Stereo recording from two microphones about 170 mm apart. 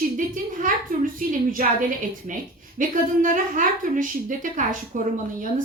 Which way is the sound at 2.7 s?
50° right (ahead or behind).